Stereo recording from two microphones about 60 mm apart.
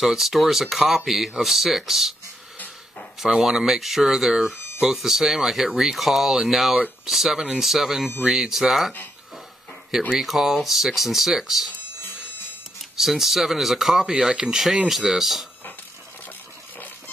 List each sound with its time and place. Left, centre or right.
0.0 s speech: centre
3.2 s speech: centre
4.5 s music: left
4.8 s speech: centre
10.1 s speech: centre
12.9 s speech: centre